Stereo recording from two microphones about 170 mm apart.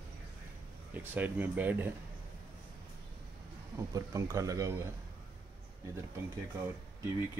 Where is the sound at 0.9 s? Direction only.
10° right (ahead or behind).